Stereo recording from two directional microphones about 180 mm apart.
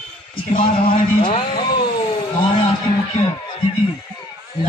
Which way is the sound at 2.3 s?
30° left (ahead or behind).